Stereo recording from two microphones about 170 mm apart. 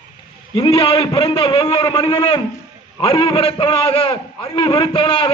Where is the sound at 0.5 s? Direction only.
30° left (ahead or behind).